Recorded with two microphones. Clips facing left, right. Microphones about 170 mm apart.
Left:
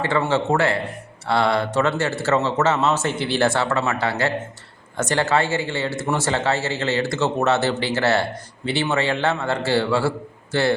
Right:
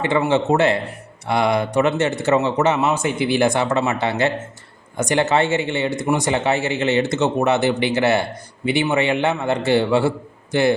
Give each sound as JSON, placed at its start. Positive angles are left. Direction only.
{"t": 0.0, "sound": "speech", "side_deg": -20}